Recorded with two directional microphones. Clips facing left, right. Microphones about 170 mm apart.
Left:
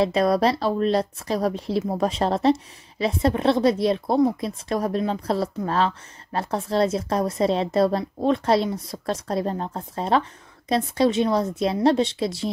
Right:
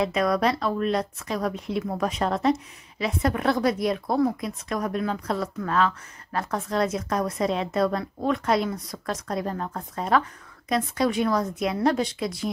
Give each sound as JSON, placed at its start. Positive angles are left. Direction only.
{"t": 0.0, "sound": "speech", "side_deg": 30}